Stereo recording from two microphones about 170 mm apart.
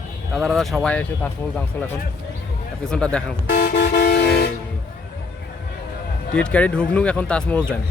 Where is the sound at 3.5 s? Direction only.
70° left (ahead or behind).